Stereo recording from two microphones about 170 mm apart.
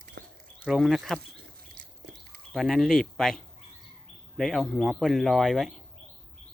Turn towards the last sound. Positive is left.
turn(degrees=5)  # may be behind; listen again after turning